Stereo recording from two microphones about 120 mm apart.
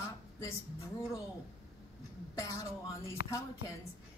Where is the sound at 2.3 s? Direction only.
25° left (ahead or behind).